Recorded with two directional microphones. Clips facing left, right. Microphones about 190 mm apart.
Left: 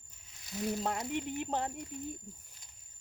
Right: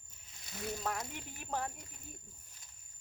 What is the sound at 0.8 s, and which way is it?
Speech, 25° left (ahead or behind).